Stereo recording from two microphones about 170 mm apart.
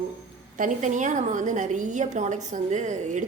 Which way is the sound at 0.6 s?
45° right (ahead or behind).